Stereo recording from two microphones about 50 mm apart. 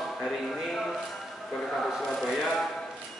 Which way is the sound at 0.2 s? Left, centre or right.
Centre.